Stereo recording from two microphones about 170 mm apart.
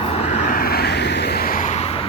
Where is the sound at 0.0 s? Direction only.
35° left (ahead or behind).